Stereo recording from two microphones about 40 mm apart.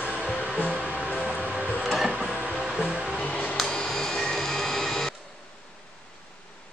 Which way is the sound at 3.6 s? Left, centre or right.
Centre.